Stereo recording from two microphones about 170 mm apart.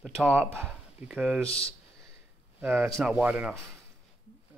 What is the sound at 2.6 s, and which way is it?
Speech, 10° right (ahead or behind).